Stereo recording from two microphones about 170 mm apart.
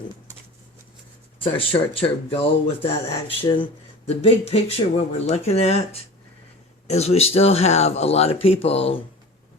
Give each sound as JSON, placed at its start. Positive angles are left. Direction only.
{"t": 1.5, "sound": "speech", "side_deg": 30}